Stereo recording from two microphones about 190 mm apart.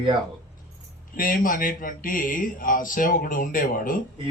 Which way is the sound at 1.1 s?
45° left (ahead or behind).